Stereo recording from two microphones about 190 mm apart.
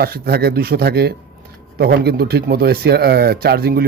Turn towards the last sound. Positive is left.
turn(degrees=-55)  # may be behind; listen again after turning